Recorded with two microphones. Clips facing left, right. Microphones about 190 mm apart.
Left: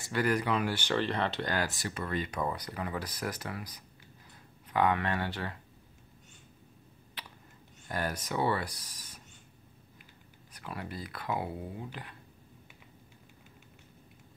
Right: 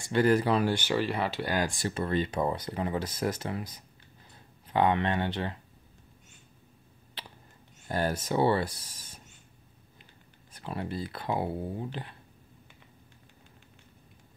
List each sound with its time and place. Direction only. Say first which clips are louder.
0.1 s speech: right 5 dB; 30° right (ahead or behind)
0.8 s speech: right 2 dB; 5° right (ahead or behind)
1.8 s speech: right 6 dB; 30° right (ahead or behind)
7.2 s a sound: right 2 dB; 30° right (ahead or behind)
7.9 s speech: right 5 dB; 30° right (ahead or behind)
10.5 s speech: right 6 dB; 25° right (ahead or behind)